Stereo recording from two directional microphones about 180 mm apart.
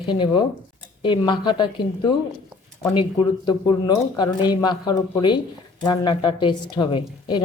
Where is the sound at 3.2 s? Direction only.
25° left (ahead or behind).